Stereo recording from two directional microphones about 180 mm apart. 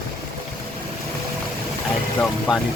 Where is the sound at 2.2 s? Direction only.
15° left (ahead or behind).